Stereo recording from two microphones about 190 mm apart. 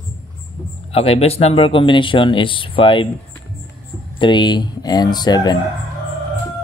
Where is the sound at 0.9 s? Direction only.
30° left (ahead or behind).